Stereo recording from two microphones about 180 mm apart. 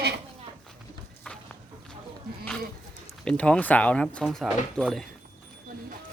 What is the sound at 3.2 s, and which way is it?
Speech, 5° left (ahead or behind).